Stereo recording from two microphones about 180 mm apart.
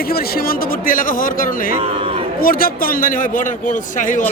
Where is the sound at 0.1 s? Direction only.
55° left (ahead or behind).